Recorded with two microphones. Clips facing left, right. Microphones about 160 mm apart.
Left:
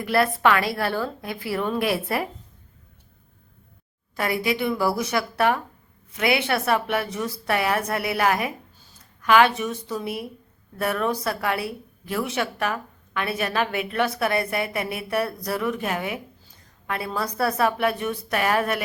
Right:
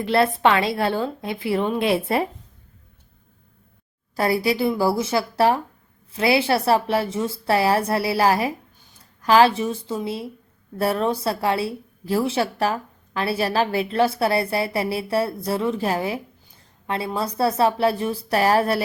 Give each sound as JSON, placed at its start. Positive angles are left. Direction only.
{"t": 0.0, "sound": "a woman's voice", "side_deg": -25}
{"t": 4.1, "sound": "a woman's voice", "side_deg": -35}